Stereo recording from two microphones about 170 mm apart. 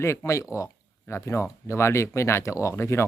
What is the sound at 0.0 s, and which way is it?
Speech, 15° left (ahead or behind).